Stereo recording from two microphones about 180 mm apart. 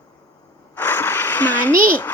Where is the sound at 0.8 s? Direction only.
10° left (ahead or behind).